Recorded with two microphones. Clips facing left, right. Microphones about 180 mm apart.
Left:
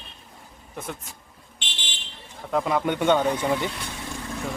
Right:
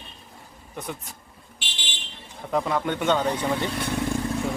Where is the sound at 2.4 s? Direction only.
Centre (ahead or behind).